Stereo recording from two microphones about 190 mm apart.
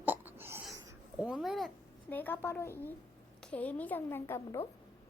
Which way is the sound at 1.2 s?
5° right (ahead or behind).